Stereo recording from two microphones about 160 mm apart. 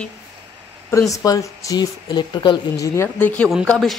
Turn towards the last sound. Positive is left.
turn(degrees=0)  # may be behind; listen again after turning